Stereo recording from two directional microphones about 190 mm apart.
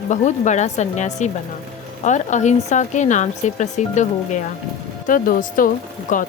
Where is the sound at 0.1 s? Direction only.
40° left (ahead or behind).